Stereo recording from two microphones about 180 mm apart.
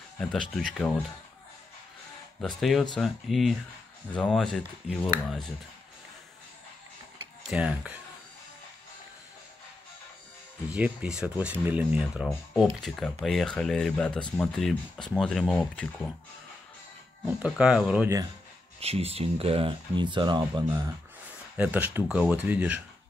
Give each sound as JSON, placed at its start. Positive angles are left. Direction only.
{"t": 0.3, "sound": "speech", "side_deg": 5}
{"t": 2.4, "sound": "speech", "side_deg": 0}
{"t": 7.4, "sound": "speech", "side_deg": -5}
{"t": 10.7, "sound": "speech", "side_deg": -5}
{"t": 17.4, "sound": "speech", "side_deg": -5}
{"t": 18.8, "sound": "speech", "side_deg": -35}
{"t": 21.5, "sound": "speech", "side_deg": -10}